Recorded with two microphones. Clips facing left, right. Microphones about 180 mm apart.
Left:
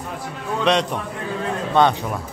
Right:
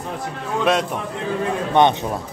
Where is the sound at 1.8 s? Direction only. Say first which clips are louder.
Right 1 dB; 20° right (ahead or behind).